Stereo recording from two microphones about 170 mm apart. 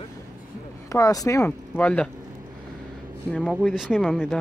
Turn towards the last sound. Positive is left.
turn(degrees=-5)  # may be behind; listen again after turning